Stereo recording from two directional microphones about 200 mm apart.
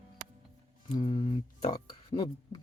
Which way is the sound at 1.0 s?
30° left (ahead or behind).